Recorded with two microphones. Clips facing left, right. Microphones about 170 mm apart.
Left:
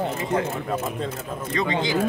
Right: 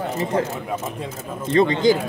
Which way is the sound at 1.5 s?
35° right (ahead or behind).